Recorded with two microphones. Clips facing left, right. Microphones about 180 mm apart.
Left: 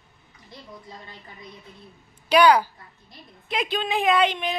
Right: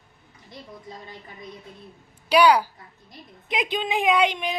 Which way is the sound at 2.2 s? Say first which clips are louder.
Left 1 dB; 10° right (ahead or behind).